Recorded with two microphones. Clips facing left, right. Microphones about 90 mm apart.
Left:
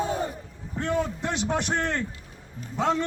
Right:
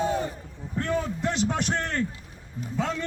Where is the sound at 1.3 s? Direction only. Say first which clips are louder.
Even; 20° left (ahead or behind).